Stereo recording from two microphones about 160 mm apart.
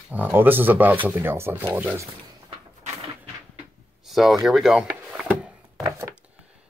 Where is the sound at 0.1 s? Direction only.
10° right (ahead or behind).